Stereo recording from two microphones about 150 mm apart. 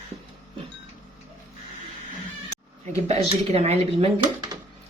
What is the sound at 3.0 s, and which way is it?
Speech, 45° right (ahead or behind).